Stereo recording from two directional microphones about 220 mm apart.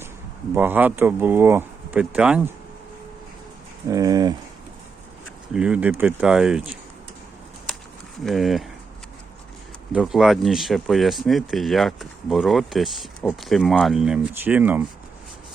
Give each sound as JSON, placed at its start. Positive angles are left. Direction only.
{"t": 0.5, "sound": "speech", "side_deg": -10}
{"t": 3.8, "sound": "speech", "side_deg": -15}
{"t": 5.5, "sound": "speech", "side_deg": -5}
{"t": 8.2, "sound": "speech", "side_deg": 0}
{"t": 9.9, "sound": "speech", "side_deg": 0}